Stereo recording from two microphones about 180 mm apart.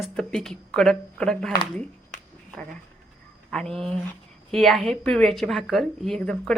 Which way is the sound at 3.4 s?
5° left (ahead or behind).